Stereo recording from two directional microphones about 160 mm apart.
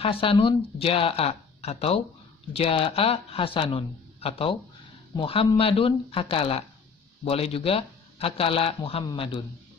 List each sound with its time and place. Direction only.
0.0 s speech: 35° left (ahead or behind)